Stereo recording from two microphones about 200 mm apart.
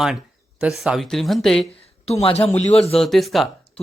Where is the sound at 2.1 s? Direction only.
30° left (ahead or behind).